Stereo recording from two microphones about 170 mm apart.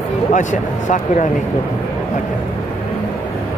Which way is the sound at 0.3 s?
50° left (ahead or behind).